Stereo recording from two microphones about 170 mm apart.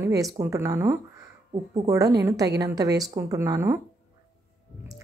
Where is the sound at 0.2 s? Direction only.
20° right (ahead or behind).